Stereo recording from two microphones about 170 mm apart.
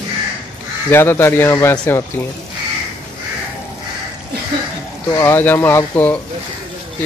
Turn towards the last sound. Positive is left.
turn(degrees=10)  # may be behind; listen again after turning